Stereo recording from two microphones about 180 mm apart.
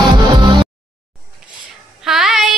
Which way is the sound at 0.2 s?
25° right (ahead or behind).